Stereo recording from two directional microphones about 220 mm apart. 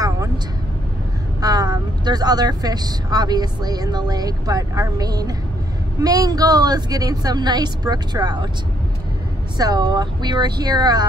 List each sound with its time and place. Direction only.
1.4 s speech: 15° right (ahead or behind)
9.6 s speech: 20° right (ahead or behind)